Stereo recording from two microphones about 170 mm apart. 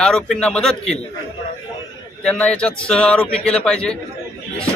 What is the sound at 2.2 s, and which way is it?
A man's voice, 5° left (ahead or behind).